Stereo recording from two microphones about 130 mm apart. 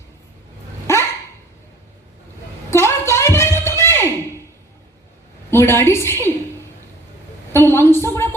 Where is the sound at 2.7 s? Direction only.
20° left (ahead or behind).